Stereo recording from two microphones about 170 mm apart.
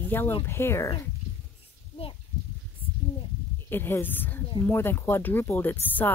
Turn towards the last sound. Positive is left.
turn(degrees=10)  # may be behind; listen again after turning